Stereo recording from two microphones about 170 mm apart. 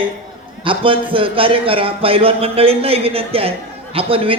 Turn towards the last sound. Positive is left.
turn(degrees=-35)  # may be behind; listen again after turning